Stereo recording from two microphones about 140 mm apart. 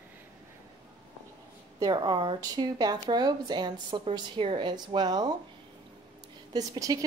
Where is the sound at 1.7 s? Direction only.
30° right (ahead or behind).